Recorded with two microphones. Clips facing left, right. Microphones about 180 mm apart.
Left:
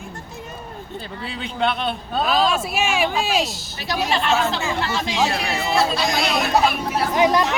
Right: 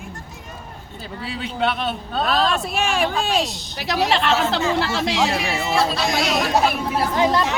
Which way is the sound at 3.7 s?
75° right (ahead or behind).